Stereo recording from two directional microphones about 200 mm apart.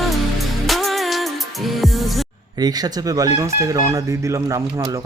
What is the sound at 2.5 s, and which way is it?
Speech, 20° right (ahead or behind).